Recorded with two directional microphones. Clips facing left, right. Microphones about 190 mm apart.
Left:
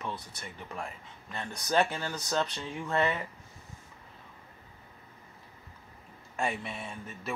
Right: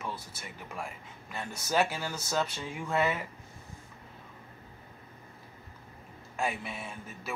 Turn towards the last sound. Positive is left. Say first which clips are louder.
# left 2 dB
turn(degrees=-5)  # may be behind; listen again after turning